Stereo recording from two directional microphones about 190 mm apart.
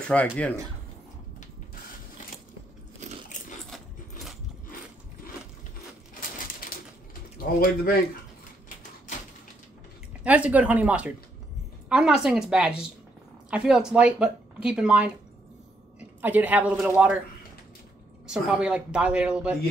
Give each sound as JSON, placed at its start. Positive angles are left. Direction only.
{"t": 0.1, "sound": "speech", "side_deg": 10}
{"t": 3.0, "sound": "crunch", "side_deg": -40}
{"t": 6.6, "sound": "a sound", "side_deg": 50}
{"t": 7.3, "sound": "speech", "side_deg": 50}
{"t": 10.2, "sound": "a woman's voice", "side_deg": -5}
{"t": 18.2, "sound": "speech", "side_deg": -5}